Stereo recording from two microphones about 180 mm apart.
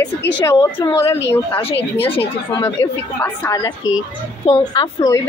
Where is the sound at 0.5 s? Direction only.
15° left (ahead or behind).